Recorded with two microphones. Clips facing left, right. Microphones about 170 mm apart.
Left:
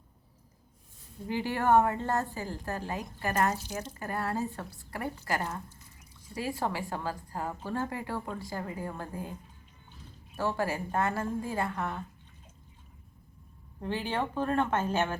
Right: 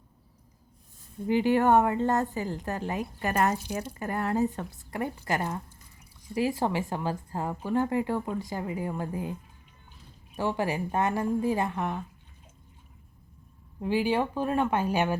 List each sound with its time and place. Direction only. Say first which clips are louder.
1.3 s a woman's voice: right 4 dB; 20° right (ahead or behind)
6.6 s a woman's voice: right 4 dB; 20° right (ahead or behind)
10.3 s a woman's voice: right 2 dB; 15° right (ahead or behind)
13.8 s a woman's voice: right 6 dB; 10° right (ahead or behind)